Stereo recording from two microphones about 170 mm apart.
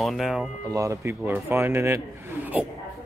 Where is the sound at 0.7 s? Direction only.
15° right (ahead or behind).